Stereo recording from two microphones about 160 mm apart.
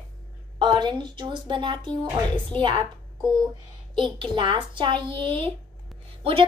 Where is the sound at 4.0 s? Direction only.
30° right (ahead or behind).